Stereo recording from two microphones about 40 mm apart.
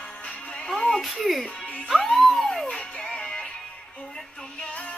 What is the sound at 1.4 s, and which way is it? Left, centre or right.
Music, left.